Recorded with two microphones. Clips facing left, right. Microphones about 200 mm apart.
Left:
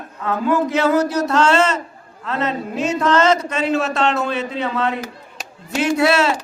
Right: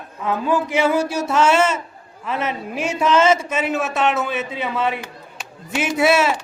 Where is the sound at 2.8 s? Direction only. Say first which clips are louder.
Even; 10° right (ahead or behind).